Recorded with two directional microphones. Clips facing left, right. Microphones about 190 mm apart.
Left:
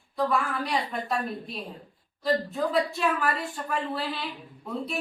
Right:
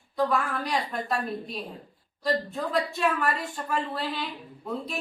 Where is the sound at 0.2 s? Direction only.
Centre (ahead or behind).